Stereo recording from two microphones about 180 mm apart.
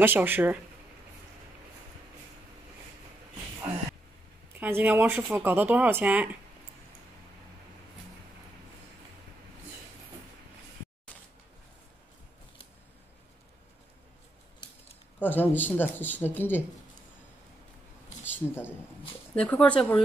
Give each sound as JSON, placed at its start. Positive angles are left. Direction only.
{"t": 0.0, "sound": "speech", "side_deg": -10}
{"t": 4.6, "sound": "speech", "side_deg": -10}
{"t": 15.1, "sound": "speech", "side_deg": 10}
{"t": 18.2, "sound": "a sound", "side_deg": 10}
{"t": 19.3, "sound": "speech", "side_deg": 5}